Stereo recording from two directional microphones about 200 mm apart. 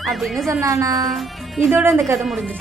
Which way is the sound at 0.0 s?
Centre (ahead or behind).